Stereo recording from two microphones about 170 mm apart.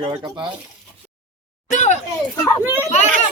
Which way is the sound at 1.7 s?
45° left (ahead or behind).